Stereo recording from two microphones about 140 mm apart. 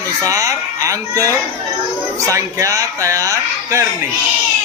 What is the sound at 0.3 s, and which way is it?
Speech, 25° right (ahead or behind).